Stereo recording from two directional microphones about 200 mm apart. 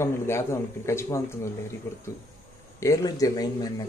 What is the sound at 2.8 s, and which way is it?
Speech, 15° left (ahead or behind).